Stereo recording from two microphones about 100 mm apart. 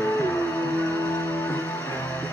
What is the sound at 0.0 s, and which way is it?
Music, 25° left (ahead or behind).